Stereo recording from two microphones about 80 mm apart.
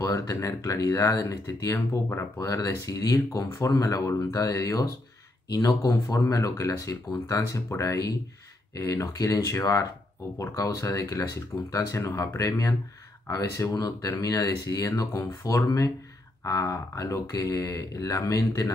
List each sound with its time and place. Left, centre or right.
0.1 s speech: left